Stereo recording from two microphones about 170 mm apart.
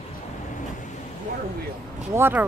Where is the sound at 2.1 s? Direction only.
10° right (ahead or behind).